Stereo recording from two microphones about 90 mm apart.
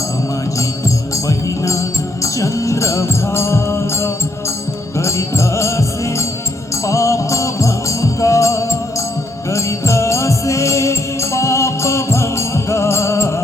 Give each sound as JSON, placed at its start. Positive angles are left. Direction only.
{"t": 1.1, "sound": "music", "side_deg": 35}